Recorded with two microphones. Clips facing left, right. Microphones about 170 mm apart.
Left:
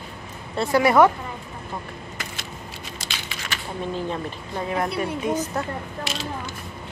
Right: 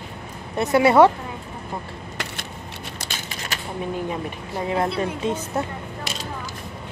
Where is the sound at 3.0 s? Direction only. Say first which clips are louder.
Right 2 dB; 45° right (ahead or behind).